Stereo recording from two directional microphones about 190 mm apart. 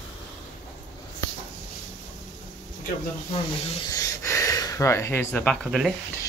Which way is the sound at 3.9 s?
15° left (ahead or behind).